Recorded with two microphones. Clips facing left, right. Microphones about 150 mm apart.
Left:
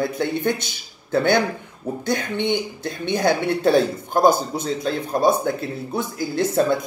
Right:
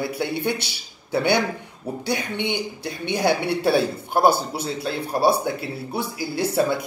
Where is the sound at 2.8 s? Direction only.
10° right (ahead or behind).